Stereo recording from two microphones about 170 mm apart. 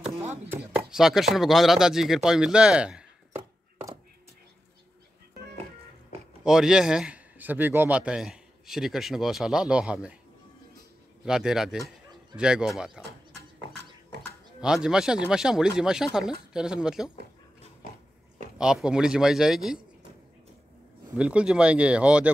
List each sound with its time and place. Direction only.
0.2 s chopping: 15° right (ahead or behind)
0.8 s speech: 5° right (ahead or behind)
6.4 s a man's voice: 5° right (ahead or behind)
11.2 s a man's voice: 5° right (ahead or behind)
14.1 s a sound: 85° right
14.6 s a man's voice: 5° right (ahead or behind)
18.6 s a man's voice: 5° right (ahead or behind)
21.2 s speech: 5° right (ahead or behind)